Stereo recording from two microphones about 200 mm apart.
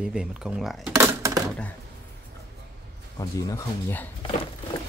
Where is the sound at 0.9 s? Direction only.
15° right (ahead or behind).